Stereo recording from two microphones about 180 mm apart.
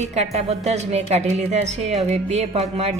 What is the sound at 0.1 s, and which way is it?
Speech, 35° right (ahead or behind).